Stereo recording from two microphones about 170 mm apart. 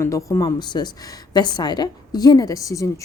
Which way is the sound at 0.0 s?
20° left (ahead or behind).